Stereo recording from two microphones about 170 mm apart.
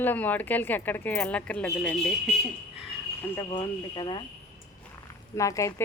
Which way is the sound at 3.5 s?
30° left (ahead or behind).